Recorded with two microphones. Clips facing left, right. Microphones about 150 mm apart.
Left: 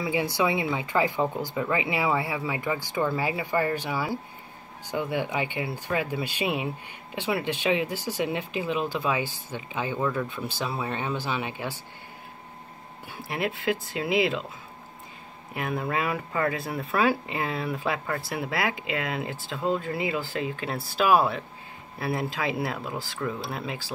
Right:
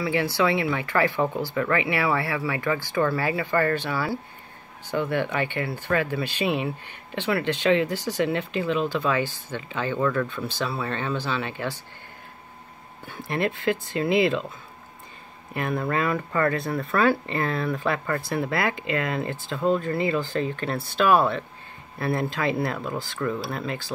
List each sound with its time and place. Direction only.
0.0 s speech: 15° left (ahead or behind)
13.1 s speech: 5° left (ahead or behind)
15.5 s speech: 5° left (ahead or behind)